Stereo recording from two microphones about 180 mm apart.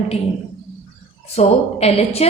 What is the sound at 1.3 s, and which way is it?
Speech, 35° left (ahead or behind).